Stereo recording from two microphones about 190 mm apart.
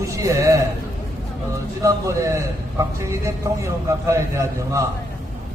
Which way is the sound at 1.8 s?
15° right (ahead or behind).